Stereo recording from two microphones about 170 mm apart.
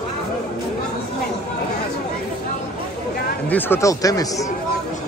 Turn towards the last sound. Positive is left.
turn(degrees=20)  # may be behind; listen again after turning